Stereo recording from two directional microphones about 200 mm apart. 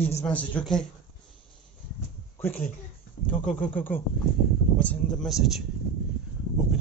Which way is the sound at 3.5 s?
5° left (ahead or behind).